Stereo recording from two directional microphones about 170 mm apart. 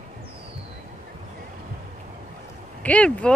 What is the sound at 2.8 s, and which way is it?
Speech, 10° left (ahead or behind).